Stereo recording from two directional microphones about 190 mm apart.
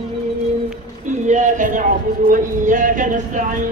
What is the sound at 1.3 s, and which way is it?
A man's voice, 40° right (ahead or behind).